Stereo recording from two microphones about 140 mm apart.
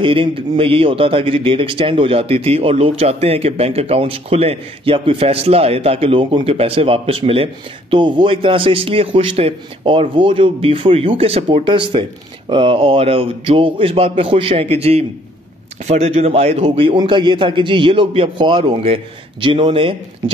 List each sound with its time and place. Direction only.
0.0 s a man's voice: 40° right (ahead or behind)
16.6 s a man's voice: 35° right (ahead or behind)